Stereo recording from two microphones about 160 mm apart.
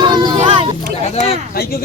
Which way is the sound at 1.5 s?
75° left (ahead or behind).